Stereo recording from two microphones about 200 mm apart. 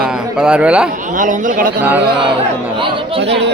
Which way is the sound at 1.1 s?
40° right (ahead or behind).